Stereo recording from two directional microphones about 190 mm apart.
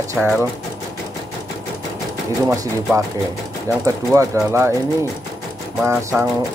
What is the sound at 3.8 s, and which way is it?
Speech, 15° right (ahead or behind).